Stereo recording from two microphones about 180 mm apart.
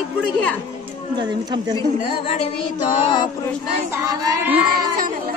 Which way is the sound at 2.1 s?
30° left (ahead or behind).